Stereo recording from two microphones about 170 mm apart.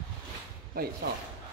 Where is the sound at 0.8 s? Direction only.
60° right (ahead or behind).